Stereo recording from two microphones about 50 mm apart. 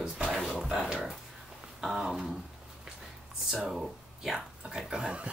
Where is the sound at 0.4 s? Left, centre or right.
Centre.